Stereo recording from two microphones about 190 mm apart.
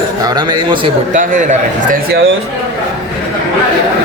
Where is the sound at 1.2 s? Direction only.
45° right (ahead or behind).